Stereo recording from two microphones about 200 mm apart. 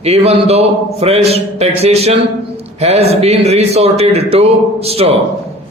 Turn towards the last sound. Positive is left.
turn(degrees=-30)  # may be behind; listen again after turning